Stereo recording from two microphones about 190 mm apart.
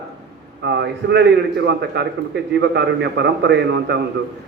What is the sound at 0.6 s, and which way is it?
A man's voice, 65° right (ahead or behind).